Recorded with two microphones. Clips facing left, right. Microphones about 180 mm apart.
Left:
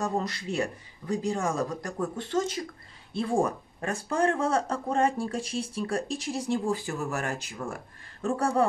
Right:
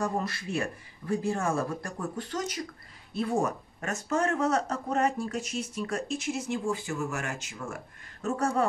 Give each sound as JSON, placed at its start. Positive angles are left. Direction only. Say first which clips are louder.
{"t": 0.0, "sound": "a man's voice", "louder": "left 1 dB", "side_deg": 20}